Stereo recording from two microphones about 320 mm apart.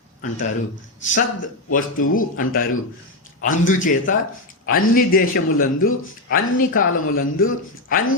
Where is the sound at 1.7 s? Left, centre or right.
Left.